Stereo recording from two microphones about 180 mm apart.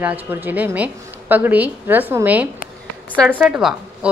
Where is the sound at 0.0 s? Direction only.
10° right (ahead or behind).